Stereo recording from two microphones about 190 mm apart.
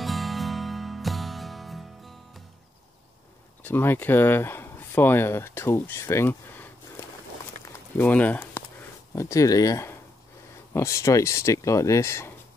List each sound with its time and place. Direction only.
0.0 s music: centre (ahead or behind)
3.6 s speech: 10° left (ahead or behind)
7.6 s a sound: 10° left (ahead or behind)
9.1 s speech: 15° left (ahead or behind)